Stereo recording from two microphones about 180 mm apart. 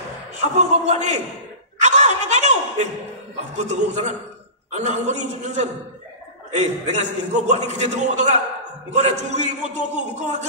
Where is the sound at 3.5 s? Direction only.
40° right (ahead or behind).